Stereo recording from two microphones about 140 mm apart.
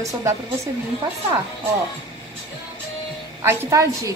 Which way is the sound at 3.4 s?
15° right (ahead or behind).